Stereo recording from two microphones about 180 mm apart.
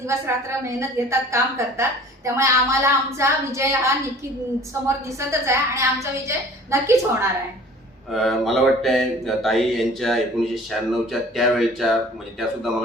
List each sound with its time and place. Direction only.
0.1 s a woman's voice: 15° right (ahead or behind)
8.1 s speech: centre (ahead or behind)